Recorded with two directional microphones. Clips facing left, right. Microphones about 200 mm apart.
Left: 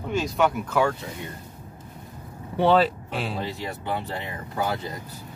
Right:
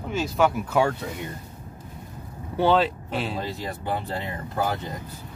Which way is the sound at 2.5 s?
5° left (ahead or behind).